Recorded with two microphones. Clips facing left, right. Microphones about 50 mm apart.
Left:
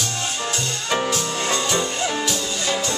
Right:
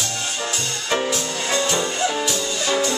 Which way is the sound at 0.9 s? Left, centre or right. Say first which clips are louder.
Even; centre.